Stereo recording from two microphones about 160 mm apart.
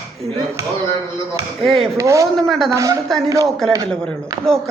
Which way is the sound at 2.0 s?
20° right (ahead or behind).